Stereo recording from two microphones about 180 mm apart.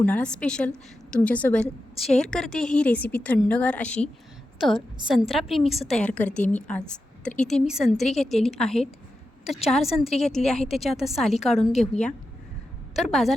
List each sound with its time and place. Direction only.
0.0 s a woman's voice: 5° left (ahead or behind)
5.6 s a woman's voice: 35° left (ahead or behind)
5.9 s a woman's voice: 5° left (ahead or behind)